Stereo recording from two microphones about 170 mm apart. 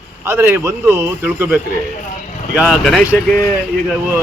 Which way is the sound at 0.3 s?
15° right (ahead or behind).